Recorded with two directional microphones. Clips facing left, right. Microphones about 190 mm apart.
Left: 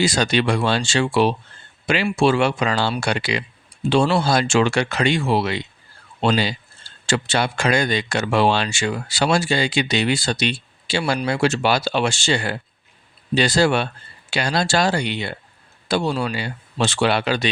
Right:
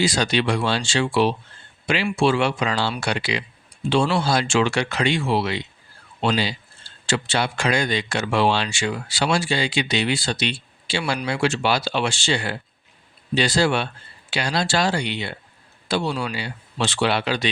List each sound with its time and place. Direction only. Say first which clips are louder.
0.0 s speech: left 2 dB; 45° left (ahead or behind)